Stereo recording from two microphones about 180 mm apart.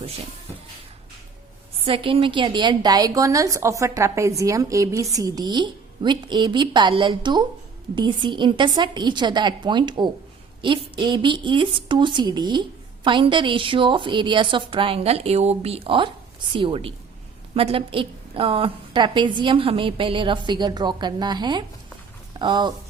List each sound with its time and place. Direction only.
1.8 s a woman's voice: 30° right (ahead or behind)